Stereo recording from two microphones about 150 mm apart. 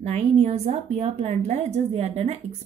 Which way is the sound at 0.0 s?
45° right (ahead or behind).